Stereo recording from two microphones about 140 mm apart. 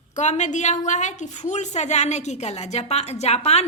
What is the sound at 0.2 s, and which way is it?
A woman's voice, 55° left (ahead or behind).